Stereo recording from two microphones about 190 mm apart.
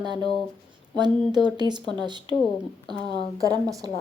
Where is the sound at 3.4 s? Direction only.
20° right (ahead or behind).